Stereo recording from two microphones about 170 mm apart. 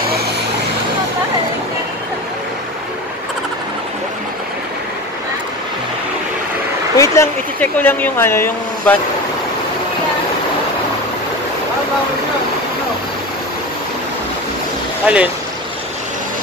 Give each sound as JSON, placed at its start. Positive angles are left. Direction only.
{"t": 7.0, "sound": "speech", "side_deg": 15}
{"t": 15.1, "sound": "speech", "side_deg": -5}